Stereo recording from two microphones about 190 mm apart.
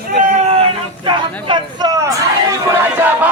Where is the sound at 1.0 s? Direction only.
25° right (ahead or behind).